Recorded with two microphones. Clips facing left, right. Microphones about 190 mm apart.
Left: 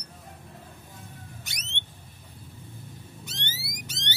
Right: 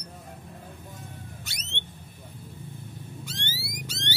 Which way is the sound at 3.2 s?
20° left (ahead or behind).